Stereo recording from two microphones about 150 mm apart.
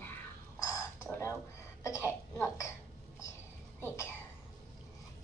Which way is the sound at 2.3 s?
15° left (ahead or behind).